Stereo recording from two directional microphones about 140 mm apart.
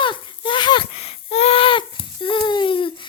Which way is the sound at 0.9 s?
45° left (ahead or behind).